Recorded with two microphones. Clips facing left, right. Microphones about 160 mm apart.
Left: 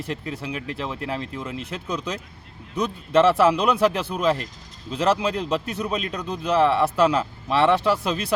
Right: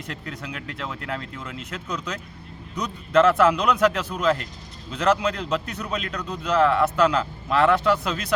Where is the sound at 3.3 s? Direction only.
30° left (ahead or behind).